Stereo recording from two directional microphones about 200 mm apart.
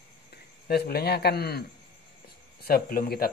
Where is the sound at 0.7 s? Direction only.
50° left (ahead or behind).